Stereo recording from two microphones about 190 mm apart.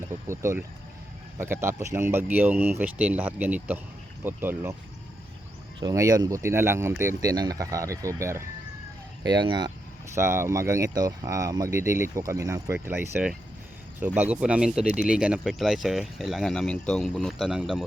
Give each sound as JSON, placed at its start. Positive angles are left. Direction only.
{"t": 0.0, "sound": "speech", "side_deg": -15}
{"t": 5.8, "sound": "speech", "side_deg": -20}